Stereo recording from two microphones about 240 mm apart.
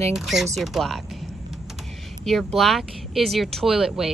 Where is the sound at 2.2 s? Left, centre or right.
Centre.